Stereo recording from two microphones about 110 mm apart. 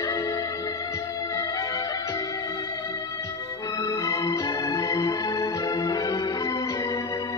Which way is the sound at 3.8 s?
35° left (ahead or behind).